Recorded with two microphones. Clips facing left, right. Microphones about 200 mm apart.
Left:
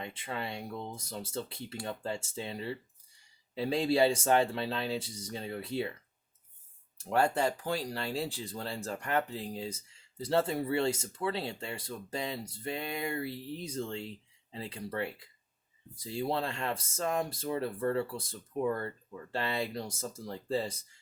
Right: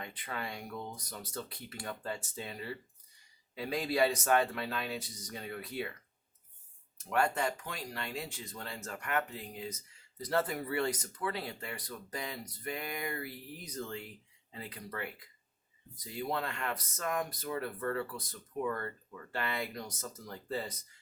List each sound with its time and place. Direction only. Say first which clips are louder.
0.0 s speech: left 3 dB; 25° left (ahead or behind)
7.0 s speech: left 3 dB; 30° left (ahead or behind)